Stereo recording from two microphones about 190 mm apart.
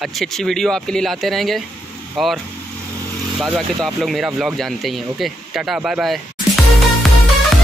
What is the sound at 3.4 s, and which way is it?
Speech, centre (ahead or behind).